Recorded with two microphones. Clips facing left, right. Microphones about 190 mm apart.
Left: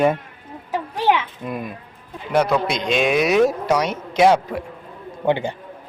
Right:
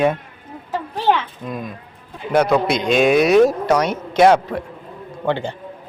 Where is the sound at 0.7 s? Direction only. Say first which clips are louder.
Right 1 dB; 15° left (ahead or behind).